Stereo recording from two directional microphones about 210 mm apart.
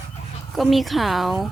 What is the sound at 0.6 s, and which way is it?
Speech, centre (ahead or behind).